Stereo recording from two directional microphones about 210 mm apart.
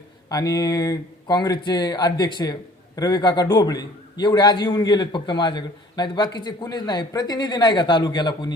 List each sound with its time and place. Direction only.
0.3 s speech: 15° left (ahead or behind)